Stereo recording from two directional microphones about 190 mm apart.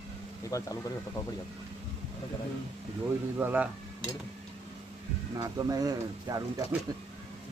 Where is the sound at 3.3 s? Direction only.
10° right (ahead or behind).